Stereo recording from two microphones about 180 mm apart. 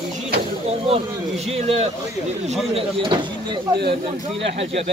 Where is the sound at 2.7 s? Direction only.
25° right (ahead or behind).